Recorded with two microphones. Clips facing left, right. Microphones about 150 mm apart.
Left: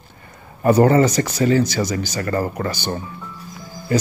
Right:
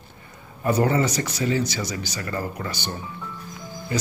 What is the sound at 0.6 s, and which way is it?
Speech, 55° left (ahead or behind).